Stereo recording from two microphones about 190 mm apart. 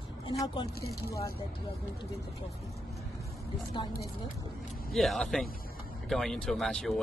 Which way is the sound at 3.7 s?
20° left (ahead or behind).